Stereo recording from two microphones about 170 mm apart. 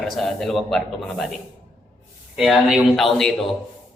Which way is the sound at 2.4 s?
Centre (ahead or behind).